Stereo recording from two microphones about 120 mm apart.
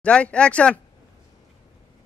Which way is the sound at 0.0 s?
10° left (ahead or behind).